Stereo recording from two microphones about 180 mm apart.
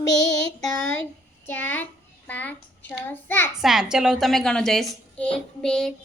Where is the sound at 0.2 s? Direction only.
15° left (ahead or behind).